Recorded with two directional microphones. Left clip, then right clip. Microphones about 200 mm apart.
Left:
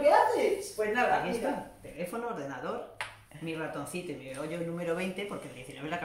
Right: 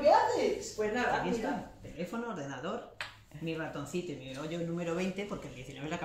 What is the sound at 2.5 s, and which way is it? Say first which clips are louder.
A woman's voice: left 2 dB; centre (ahead or behind).